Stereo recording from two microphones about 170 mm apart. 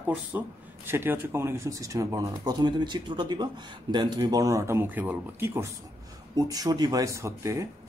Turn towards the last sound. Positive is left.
turn(degrees=-15)  # may be behind; listen again after turning